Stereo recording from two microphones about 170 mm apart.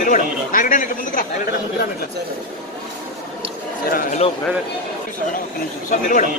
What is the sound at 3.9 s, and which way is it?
Speech, 55° left (ahead or behind).